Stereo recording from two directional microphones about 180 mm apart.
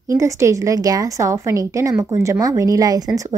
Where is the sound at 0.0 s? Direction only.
15° right (ahead or behind).